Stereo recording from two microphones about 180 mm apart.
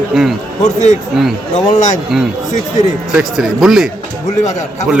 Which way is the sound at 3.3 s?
Centre (ahead or behind).